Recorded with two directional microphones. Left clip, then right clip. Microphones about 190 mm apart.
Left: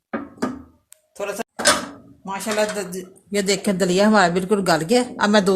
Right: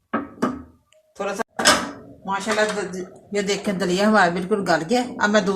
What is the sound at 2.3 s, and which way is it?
Speech, 55° left (ahead or behind).